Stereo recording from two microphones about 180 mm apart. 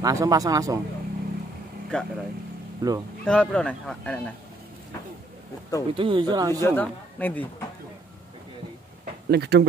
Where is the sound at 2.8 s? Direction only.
20° right (ahead or behind).